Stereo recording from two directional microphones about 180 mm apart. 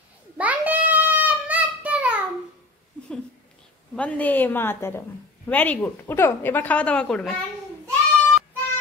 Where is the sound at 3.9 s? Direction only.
10° left (ahead or behind).